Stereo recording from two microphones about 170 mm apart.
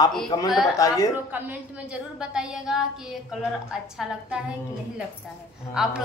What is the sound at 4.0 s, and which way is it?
Speech, 5° right (ahead or behind).